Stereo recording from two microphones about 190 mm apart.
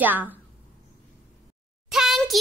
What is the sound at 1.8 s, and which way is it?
Speech, centre (ahead or behind).